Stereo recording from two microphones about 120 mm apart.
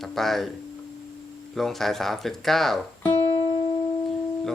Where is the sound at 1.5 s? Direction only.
Centre (ahead or behind).